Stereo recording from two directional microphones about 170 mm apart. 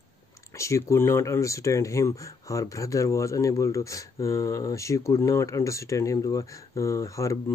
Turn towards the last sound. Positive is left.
turn(degrees=15)  # may be behind; listen again after turning